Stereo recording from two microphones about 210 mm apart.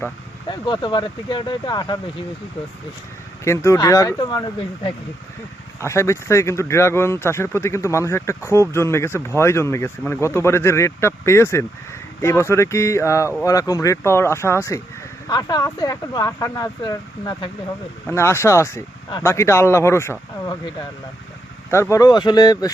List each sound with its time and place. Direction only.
0.6 s speech: 20° left (ahead or behind)
3.4 s speech: 15° left (ahead or behind)
21.7 s speech: 15° left (ahead or behind)